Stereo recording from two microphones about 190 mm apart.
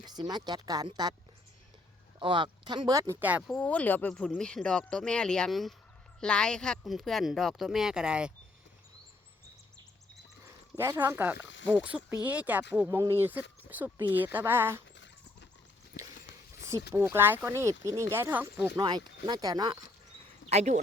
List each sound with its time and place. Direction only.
0.0 s speech: 20° right (ahead or behind)
2.1 s speech: 25° right (ahead or behind); by 8.3 s 5° right (ahead or behind)
10.4 s speech: 15° right (ahead or behind)
14.9 s a sound: 70° left (ahead or behind)
16.9 s speech: 10° right (ahead or behind)
18.8 s speech: 20° right (ahead or behind)
20.5 s speech: 35° right (ahead or behind)